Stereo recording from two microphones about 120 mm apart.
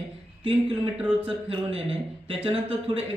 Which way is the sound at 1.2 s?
50° right (ahead or behind).